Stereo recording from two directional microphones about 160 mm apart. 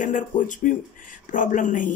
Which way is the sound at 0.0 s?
50° left (ahead or behind).